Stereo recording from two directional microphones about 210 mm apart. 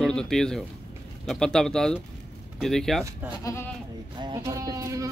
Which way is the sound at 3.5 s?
15° left (ahead or behind).